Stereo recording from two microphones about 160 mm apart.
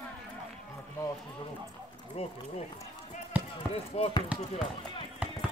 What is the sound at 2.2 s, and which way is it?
Speech, 40° left (ahead or behind).